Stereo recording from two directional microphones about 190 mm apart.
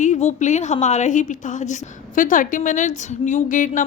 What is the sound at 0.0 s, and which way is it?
A woman's voice, 40° left (ahead or behind).